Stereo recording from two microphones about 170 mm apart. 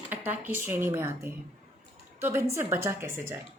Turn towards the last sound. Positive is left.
turn(degrees=-15)  # may be behind; listen again after turning